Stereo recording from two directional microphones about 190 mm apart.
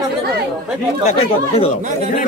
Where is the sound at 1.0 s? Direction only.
30° left (ahead or behind).